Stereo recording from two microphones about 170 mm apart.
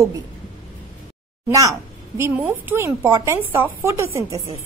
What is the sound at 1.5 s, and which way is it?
A woman's voice, 20° right (ahead or behind).